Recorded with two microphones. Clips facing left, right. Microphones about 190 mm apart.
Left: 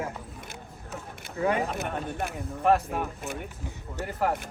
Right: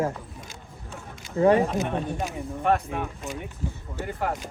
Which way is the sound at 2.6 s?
Centre (ahead or behind).